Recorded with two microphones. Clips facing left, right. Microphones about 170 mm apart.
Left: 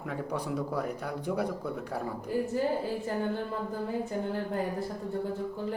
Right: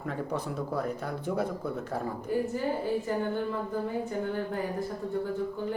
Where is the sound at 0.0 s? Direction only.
10° left (ahead or behind).